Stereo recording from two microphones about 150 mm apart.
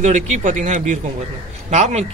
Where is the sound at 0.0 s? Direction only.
55° right (ahead or behind).